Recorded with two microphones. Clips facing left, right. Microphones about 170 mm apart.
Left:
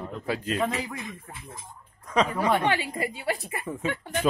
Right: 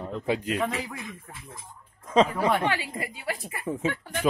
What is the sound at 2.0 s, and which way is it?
Speech, 25° right (ahead or behind).